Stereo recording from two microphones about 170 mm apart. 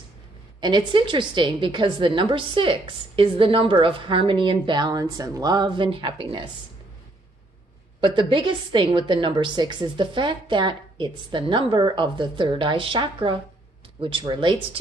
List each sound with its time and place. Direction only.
0.6 s a woman's voice: 25° right (ahead or behind)
8.0 s a woman's voice: 30° right (ahead or behind)